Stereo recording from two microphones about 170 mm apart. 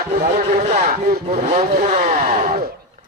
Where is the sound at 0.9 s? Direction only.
60° right (ahead or behind).